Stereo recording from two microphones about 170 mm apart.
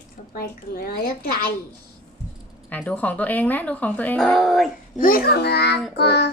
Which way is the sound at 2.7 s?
10° left (ahead or behind).